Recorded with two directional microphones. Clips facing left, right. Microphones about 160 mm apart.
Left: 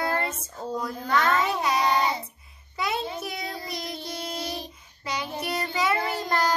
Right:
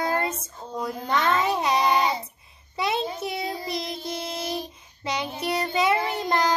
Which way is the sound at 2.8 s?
20° right (ahead or behind).